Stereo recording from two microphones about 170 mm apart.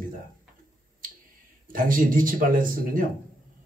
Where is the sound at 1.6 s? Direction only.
55° right (ahead or behind).